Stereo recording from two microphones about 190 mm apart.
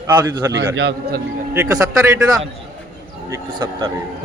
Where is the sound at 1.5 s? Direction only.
15° right (ahead or behind).